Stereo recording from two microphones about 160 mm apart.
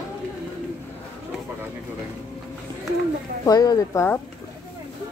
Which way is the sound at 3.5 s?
25° left (ahead or behind).